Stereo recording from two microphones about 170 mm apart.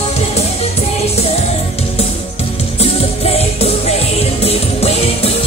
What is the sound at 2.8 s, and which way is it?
Music, 35° left (ahead or behind).